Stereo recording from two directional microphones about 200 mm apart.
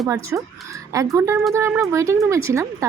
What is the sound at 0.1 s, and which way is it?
Speech, 15° right (ahead or behind).